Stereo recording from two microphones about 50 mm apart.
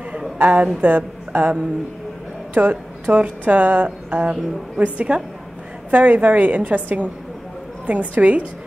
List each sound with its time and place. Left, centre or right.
0.4 s a woman's voice: right
2.7 s a woman's voice: right
5.9 s a woman's voice: right